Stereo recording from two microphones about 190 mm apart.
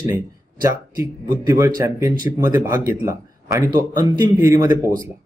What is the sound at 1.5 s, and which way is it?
A man's voice, 15° right (ahead or behind).